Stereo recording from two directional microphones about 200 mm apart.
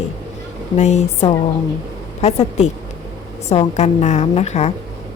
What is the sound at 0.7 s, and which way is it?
A woman's voice, 35° left (ahead or behind).